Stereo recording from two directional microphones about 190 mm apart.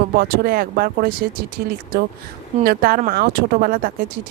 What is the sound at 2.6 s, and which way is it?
Speech, 50° right (ahead or behind).